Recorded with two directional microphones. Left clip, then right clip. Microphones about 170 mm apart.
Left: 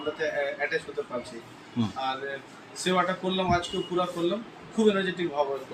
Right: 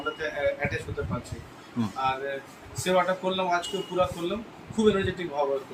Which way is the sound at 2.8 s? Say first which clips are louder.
Right 2 dB; 5° left (ahead or behind).